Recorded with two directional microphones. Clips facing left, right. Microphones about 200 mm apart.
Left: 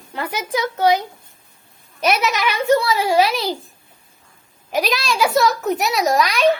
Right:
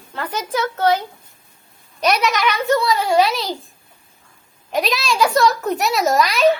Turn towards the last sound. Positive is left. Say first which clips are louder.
# right 1 dB
turn(degrees=0)  # may be behind; listen again after turning